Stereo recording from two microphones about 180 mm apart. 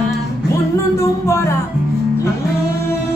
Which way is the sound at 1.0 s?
15° left (ahead or behind).